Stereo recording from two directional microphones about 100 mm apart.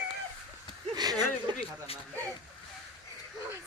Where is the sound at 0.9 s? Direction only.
45° right (ahead or behind).